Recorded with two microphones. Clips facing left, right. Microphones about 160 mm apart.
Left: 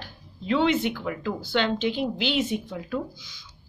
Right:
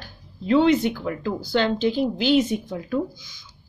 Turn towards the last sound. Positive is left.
turn(degrees=-45)  # may be behind; listen again after turning